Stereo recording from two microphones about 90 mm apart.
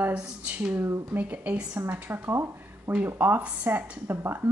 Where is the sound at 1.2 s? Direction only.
15° right (ahead or behind).